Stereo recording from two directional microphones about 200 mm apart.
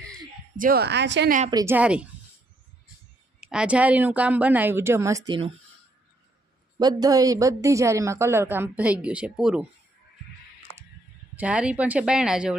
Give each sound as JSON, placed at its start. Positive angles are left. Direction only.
{"t": 0.5, "sound": "a woman's voice", "side_deg": -45}
{"t": 1.5, "sound": "a woman's voice", "side_deg": -15}
{"t": 3.4, "sound": "a woman's voice", "side_deg": -5}
{"t": 6.7, "sound": "a woman's voice", "side_deg": -20}
{"t": 11.3, "sound": "speech", "side_deg": -5}